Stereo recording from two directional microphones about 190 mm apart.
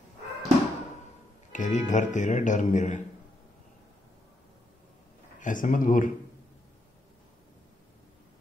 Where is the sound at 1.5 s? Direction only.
40° left (ahead or behind).